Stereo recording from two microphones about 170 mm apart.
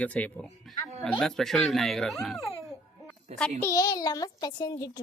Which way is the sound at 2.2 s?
Centre (ahead or behind).